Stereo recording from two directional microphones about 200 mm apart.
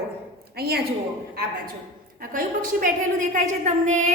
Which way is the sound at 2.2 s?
45° right (ahead or behind).